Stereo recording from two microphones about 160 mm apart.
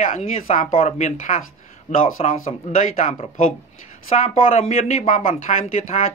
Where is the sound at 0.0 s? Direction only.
45° left (ahead or behind).